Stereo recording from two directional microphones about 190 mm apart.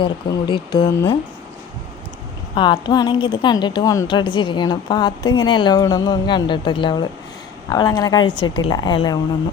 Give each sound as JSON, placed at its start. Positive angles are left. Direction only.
{"t": 0.0, "sound": "a woman's voice", "side_deg": 25}
{"t": 2.6, "sound": "a woman's voice", "side_deg": 25}